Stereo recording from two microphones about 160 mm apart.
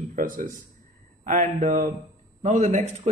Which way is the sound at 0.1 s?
60° right (ahead or behind).